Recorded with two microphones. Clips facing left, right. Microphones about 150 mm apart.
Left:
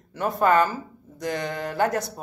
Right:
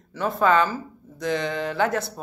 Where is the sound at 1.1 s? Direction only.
45° left (ahead or behind).